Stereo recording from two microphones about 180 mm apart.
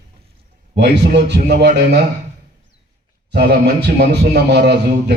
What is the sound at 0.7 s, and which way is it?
Speech, 70° right (ahead or behind).